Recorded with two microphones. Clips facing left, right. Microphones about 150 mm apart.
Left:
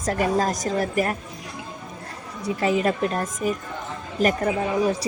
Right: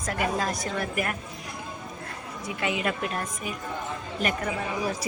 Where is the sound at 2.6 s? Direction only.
35° left (ahead or behind).